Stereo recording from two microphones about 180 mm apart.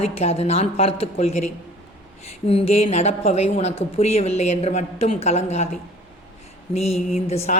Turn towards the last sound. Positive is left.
turn(degrees=35)  # may be behind; listen again after turning